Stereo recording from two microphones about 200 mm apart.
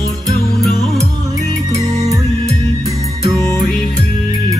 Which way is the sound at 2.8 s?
20° right (ahead or behind).